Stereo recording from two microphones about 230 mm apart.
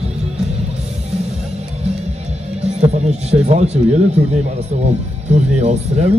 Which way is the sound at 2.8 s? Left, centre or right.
Right.